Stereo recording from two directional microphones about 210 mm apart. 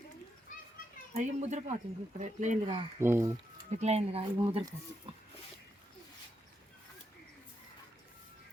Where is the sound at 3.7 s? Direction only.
30° right (ahead or behind).